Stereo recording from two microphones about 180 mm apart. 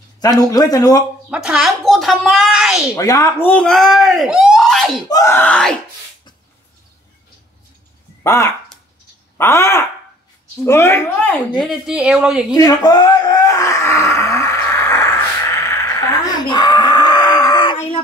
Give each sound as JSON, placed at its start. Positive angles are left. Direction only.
{"t": 0.2, "sound": "speech", "side_deg": 20}
{"t": 1.3, "sound": "speech", "side_deg": -5}
{"t": 2.9, "sound": "speech", "side_deg": 20}
{"t": 5.0, "sound": "speech", "side_deg": 20}
{"t": 8.2, "sound": "speech", "side_deg": 15}
{"t": 11.6, "sound": "speech", "side_deg": 0}
{"t": 12.5, "sound": "a sound", "side_deg": 20}